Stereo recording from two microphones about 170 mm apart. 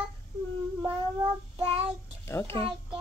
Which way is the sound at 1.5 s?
35° right (ahead or behind).